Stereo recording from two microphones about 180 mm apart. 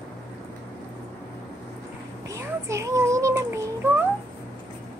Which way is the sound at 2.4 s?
15° right (ahead or behind).